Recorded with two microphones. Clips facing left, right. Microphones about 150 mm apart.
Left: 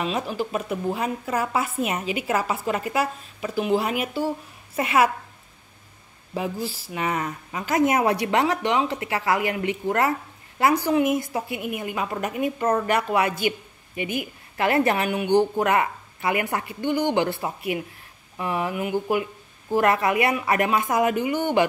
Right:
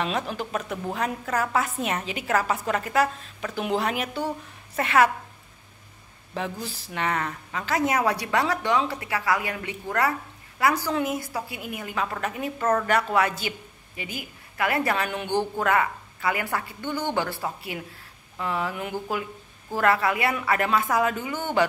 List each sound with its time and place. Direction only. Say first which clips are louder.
0.0 s a woman's voice: left 2 dB; 5° left (ahead or behind)
6.3 s a woman's voice: left 4 dB; 5° left (ahead or behind)